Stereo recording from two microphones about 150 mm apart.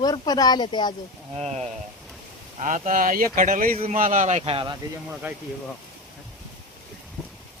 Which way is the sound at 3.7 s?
40° right (ahead or behind).